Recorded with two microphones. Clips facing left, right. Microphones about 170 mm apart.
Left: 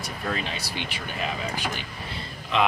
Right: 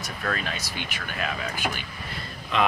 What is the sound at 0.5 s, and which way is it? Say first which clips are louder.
Speech: left 1 dB; 30° left (ahead or behind).